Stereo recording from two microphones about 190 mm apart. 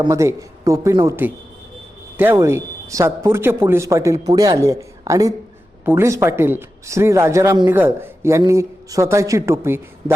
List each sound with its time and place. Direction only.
0.0 s a man's voice: 15° right (ahead or behind)